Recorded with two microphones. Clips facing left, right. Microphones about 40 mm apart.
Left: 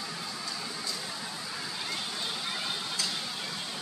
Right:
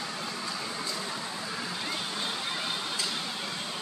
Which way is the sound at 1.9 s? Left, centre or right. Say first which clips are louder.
Right 1 dB; centre.